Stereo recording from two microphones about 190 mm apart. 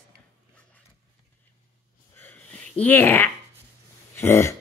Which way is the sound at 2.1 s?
10° left (ahead or behind).